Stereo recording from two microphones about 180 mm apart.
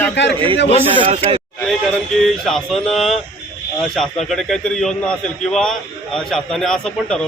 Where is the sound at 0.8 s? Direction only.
30° right (ahead or behind).